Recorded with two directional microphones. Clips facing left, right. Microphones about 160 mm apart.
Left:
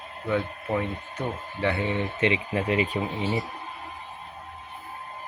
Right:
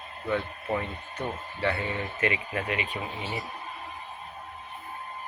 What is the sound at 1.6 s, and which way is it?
Speech, 20° left (ahead or behind).